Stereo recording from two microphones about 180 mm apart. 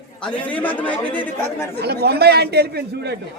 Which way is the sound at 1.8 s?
65° right (ahead or behind).